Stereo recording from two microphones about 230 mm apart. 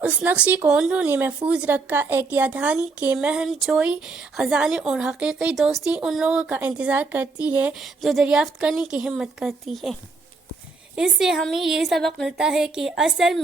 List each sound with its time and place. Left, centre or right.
0.0 s speech: centre